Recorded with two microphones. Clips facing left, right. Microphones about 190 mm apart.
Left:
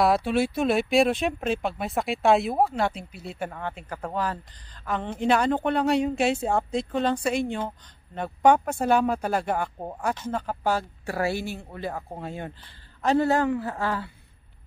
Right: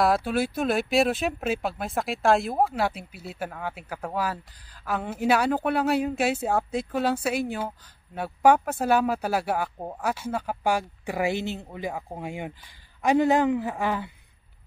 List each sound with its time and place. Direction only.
0.0 s a man's voice: centre (ahead or behind); by 14.1 s 15° right (ahead or behind)